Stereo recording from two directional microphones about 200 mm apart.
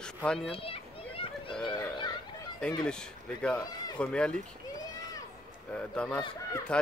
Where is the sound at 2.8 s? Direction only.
5° left (ahead or behind).